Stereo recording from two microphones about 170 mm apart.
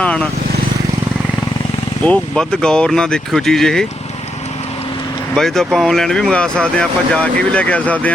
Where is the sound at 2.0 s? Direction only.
5° left (ahead or behind).